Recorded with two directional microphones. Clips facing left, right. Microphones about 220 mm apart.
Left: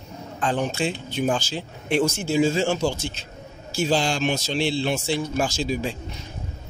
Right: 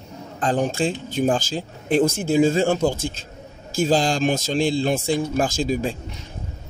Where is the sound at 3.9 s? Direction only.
45° right (ahead or behind).